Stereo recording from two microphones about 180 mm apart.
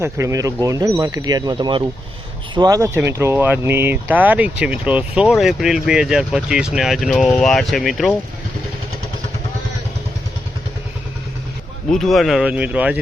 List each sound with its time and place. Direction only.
0.0 s speech: 15° right (ahead or behind); by 8.1 s centre (ahead or behind)
11.9 s speech: centre (ahead or behind)